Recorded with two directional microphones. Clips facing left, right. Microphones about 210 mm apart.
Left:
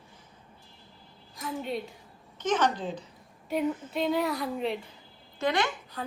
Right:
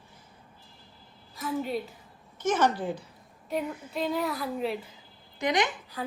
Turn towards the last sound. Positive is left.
turn(degrees=-5)  # may be behind; listen again after turning